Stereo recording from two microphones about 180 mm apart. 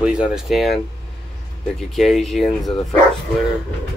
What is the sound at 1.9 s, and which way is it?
Speech, centre (ahead or behind).